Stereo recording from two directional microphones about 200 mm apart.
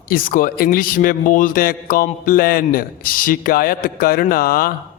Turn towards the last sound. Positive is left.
turn(degrees=50)  # may be behind; listen again after turning